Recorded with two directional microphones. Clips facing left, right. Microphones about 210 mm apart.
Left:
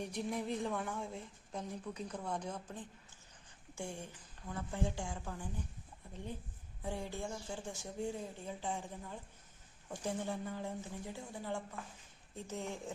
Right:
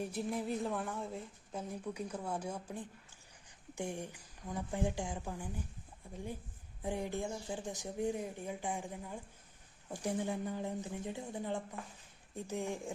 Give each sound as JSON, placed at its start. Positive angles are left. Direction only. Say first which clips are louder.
{"t": 0.0, "sound": "a woman's voice", "louder": "right 2 dB", "side_deg": -5}
{"t": 6.8, "sound": "a woman's voice", "louder": "right 4 dB", "side_deg": -15}